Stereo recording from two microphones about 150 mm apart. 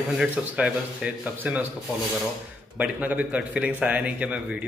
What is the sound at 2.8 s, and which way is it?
Speech, 10° right (ahead or behind).